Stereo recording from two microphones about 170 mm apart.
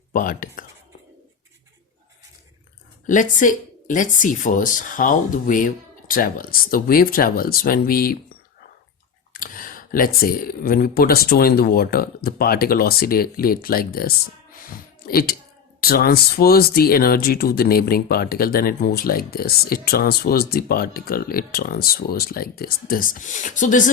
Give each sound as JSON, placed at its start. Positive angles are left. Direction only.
{"t": 0.1, "sound": "speech", "side_deg": 55}
{"t": 3.1, "sound": "speech", "side_deg": 50}
{"t": 9.3, "sound": "speech", "side_deg": 55}